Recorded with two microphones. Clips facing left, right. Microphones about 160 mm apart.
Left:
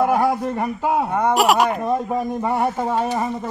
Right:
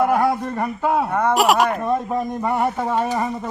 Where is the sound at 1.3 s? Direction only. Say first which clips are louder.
Even; centre (ahead or behind).